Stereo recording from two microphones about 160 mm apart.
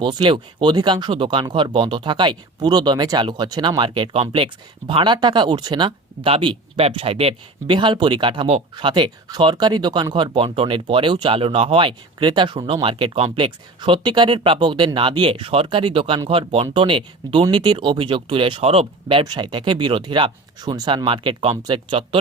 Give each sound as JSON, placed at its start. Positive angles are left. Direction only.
{"t": 0.0, "sound": "speech", "side_deg": -30}